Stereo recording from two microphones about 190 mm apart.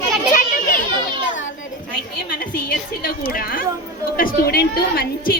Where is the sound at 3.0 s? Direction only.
50° left (ahead or behind).